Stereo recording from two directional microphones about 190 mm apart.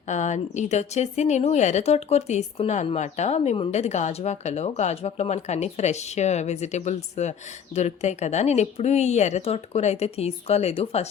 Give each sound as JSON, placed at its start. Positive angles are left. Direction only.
{"t": 0.1, "sound": "a woman's voice", "side_deg": 40}